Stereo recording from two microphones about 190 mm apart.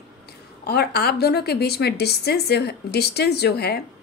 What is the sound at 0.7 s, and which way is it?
A woman's voice, 60° left (ahead or behind).